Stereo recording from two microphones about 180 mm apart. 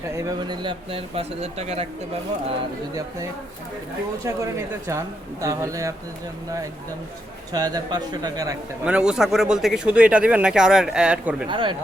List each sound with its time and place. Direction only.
0.2 s speech: 20° right (ahead or behind)
4.2 s speech: 15° right (ahead or behind)
7.5 s speech: 20° right (ahead or behind)
8.8 s speech: 5° right (ahead or behind)
11.4 s speech: 25° right (ahead or behind)